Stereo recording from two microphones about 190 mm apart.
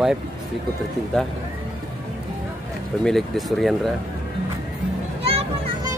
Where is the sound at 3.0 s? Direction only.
Centre (ahead or behind).